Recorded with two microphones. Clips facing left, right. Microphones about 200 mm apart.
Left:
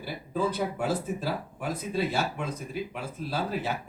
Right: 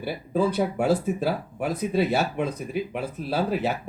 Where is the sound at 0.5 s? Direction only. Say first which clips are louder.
Right 6 dB; 60° right (ahead or behind).